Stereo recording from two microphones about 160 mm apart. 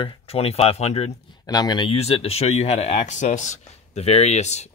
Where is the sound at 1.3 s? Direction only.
25° left (ahead or behind).